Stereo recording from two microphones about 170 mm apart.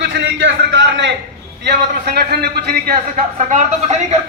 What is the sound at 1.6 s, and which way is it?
A man's voice, 80° right.